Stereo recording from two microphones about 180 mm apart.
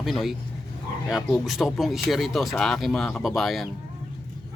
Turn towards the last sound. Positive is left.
turn(degrees=0)  # may be behind; listen again after turning